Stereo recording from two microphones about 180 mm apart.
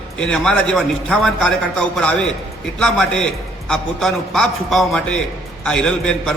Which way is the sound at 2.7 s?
5° left (ahead or behind).